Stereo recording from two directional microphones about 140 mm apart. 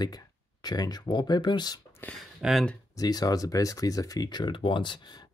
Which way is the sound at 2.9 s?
25° left (ahead or behind).